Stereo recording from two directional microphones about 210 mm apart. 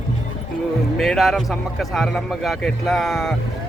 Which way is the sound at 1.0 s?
Centre (ahead or behind).